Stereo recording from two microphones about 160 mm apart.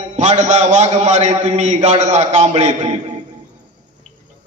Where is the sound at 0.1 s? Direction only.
45° right (ahead or behind).